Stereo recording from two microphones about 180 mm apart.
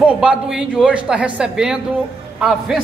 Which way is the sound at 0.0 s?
5° right (ahead or behind).